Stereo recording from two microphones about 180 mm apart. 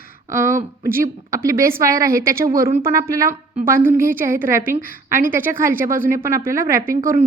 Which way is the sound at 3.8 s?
50° right (ahead or behind).